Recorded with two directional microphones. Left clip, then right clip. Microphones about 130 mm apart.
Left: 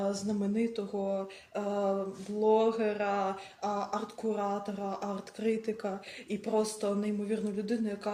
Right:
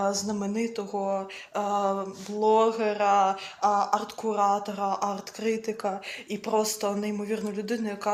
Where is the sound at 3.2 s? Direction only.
30° left (ahead or behind).